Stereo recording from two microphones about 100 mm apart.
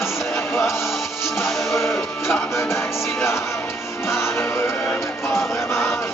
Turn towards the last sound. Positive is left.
turn(degrees=25)  # may be behind; listen again after turning